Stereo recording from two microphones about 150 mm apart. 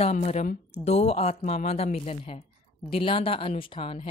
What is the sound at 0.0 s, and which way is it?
Speech, 45° left (ahead or behind).